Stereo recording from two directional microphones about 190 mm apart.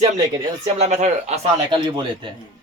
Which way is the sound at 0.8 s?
35° right (ahead or behind).